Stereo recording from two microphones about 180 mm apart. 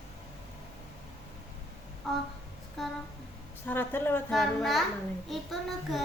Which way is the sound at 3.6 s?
10° left (ahead or behind).